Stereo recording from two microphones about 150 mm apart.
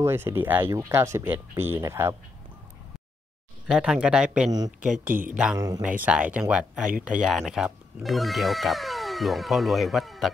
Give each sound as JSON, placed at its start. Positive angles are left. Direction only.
{"t": 0.0, "sound": "speech", "side_deg": -15}
{"t": 3.6, "sound": "speech", "side_deg": 0}